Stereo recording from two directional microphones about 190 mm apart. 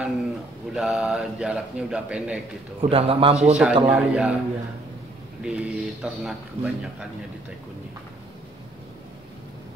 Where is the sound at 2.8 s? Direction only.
30° right (ahead or behind).